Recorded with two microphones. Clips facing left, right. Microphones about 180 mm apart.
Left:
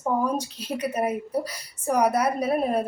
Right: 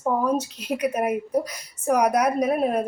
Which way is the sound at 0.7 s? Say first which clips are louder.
Right 2 dB; 10° right (ahead or behind).